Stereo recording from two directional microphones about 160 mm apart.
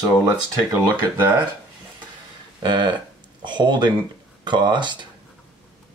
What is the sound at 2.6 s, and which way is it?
Speech, 30° right (ahead or behind).